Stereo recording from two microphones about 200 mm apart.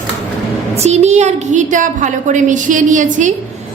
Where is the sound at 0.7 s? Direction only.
35° right (ahead or behind).